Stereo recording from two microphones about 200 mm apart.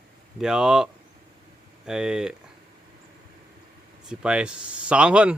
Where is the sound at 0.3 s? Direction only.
5° right (ahead or behind).